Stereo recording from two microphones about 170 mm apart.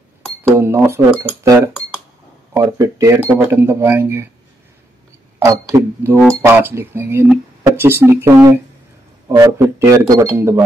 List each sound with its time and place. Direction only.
0.4 s speech: 15° right (ahead or behind)
2.5 s speech: 20° right (ahead or behind)
5.4 s speech: 20° right (ahead or behind)